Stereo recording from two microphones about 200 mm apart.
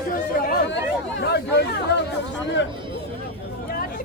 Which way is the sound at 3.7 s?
45° left (ahead or behind).